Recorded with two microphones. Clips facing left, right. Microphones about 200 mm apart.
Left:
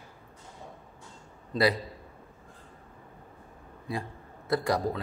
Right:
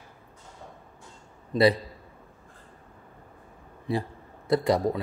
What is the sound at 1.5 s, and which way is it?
Speech, 25° right (ahead or behind).